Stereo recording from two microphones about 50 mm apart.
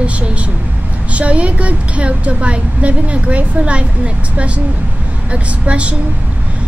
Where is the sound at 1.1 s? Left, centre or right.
Right.